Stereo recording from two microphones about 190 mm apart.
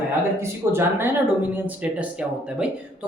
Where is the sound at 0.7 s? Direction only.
10° right (ahead or behind).